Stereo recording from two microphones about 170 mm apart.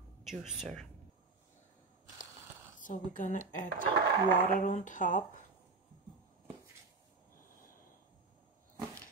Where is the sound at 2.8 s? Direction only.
50° left (ahead or behind).